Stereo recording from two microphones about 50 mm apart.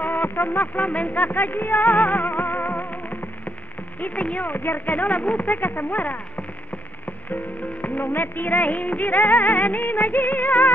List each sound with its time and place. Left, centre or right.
0.0 s music: left
4.0 s music of bollywood: left
7.8 s music of bollywood: left